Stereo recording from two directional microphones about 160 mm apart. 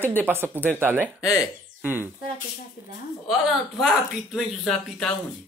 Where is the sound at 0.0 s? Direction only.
15° right (ahead or behind).